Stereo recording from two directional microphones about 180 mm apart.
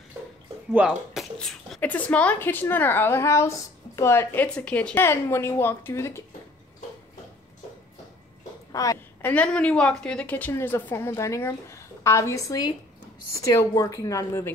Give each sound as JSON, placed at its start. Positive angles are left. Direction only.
{"t": 0.7, "sound": "speech", "side_deg": -5}
{"t": 8.7, "sound": "speech", "side_deg": 15}